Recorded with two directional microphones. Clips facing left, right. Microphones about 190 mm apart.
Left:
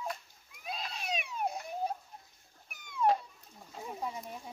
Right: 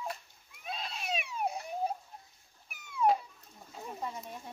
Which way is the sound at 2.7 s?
5° right (ahead or behind).